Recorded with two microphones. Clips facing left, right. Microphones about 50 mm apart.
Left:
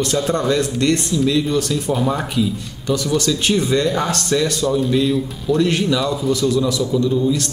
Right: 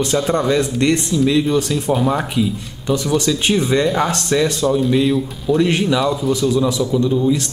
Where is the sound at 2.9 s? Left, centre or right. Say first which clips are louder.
Right 1 dB; centre.